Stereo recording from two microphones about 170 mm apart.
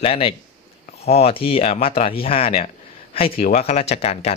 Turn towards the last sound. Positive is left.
turn(degrees=35)  # may be behind; listen again after turning